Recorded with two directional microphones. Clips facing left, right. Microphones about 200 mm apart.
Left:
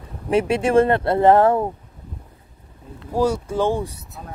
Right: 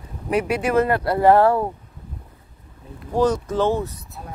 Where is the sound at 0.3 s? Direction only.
25° left (ahead or behind).